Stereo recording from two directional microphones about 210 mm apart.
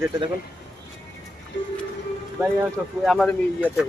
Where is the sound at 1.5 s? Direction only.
60° left (ahead or behind).